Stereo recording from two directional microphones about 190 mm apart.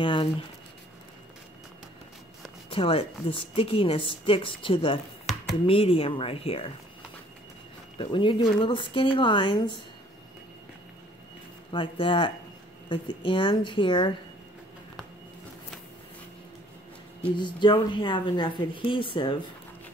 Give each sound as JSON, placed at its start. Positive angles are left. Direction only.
{"t": 0.0, "sound": "a sound", "side_deg": 25}
{"t": 2.7, "sound": "speech", "side_deg": 30}
{"t": 5.3, "sound": "a sound", "side_deg": 0}
{"t": 5.7, "sound": "speech", "side_deg": 30}
{"t": 8.0, "sound": "speech", "side_deg": 25}
{"t": 11.7, "sound": "speech", "side_deg": 25}
{"t": 17.4, "sound": "speech", "side_deg": 25}